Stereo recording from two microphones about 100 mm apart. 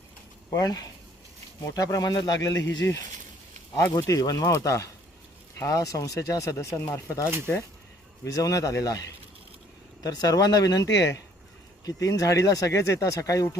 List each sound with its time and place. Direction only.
0.5 s speech: 40° left (ahead or behind)